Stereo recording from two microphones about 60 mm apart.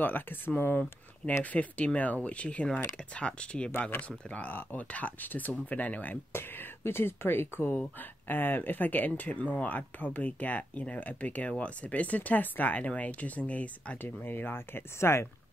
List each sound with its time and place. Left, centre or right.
0.0 s speech: left; by 3.7 s centre
4.3 s speech: left
6.3 s speech: left
14.0 s speech: left